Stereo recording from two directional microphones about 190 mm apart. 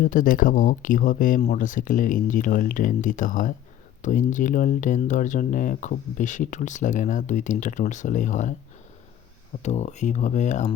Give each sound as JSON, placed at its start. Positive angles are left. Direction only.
{"t": 0.0, "sound": "speech", "side_deg": 45}
{"t": 9.6, "sound": "speech", "side_deg": 35}